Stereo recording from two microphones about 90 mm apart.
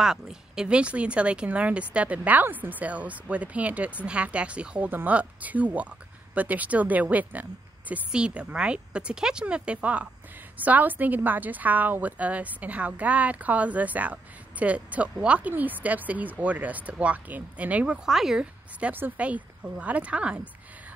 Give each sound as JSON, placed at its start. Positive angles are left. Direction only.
{"t": 0.0, "sound": "a woman's voice", "side_deg": -5}